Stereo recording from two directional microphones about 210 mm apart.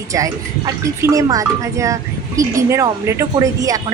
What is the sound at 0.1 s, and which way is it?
Speech, 15° right (ahead or behind).